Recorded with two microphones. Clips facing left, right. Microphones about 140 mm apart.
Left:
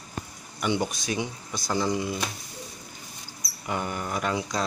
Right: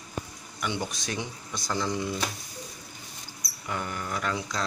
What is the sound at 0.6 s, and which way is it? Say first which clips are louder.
Speech: left 5 dB; 15° left (ahead or behind).